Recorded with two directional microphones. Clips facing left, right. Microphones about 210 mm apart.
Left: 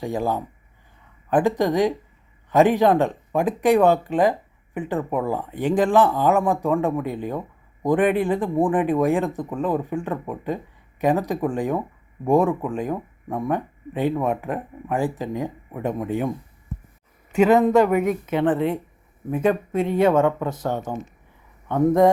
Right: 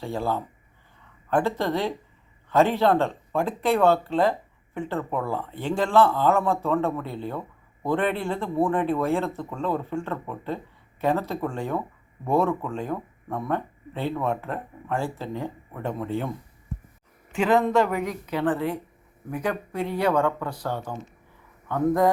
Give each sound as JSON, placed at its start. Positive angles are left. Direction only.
{"t": 0.0, "sound": "speech", "side_deg": 15}
{"t": 17.4, "sound": "speech", "side_deg": 20}